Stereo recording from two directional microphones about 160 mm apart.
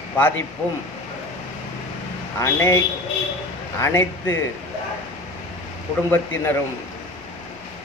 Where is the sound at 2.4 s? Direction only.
20° left (ahead or behind).